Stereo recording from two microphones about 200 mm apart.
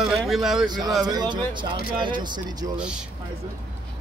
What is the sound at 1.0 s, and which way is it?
Speech, 20° right (ahead or behind).